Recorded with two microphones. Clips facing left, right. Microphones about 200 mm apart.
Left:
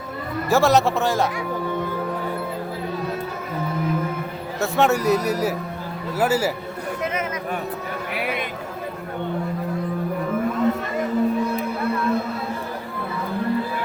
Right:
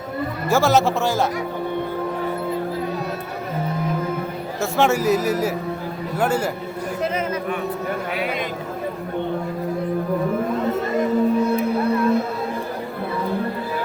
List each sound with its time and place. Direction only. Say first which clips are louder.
0.5 s a man's voice: even; centre (ahead or behind)
4.6 s a man's voice: even; centre (ahead or behind)
8.1 s a sound: right 2 dB; 60° left (ahead or behind)